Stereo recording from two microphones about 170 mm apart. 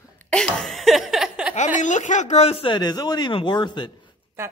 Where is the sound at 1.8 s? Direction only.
45° left (ahead or behind); by 3.8 s 25° left (ahead or behind).